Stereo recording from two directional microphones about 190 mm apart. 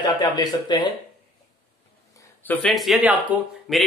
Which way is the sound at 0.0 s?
25° left (ahead or behind).